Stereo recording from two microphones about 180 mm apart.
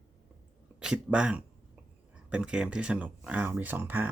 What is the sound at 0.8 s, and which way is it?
Speech, 5° right (ahead or behind).